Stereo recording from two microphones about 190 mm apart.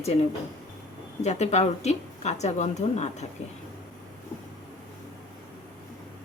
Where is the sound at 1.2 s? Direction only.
35° left (ahead or behind).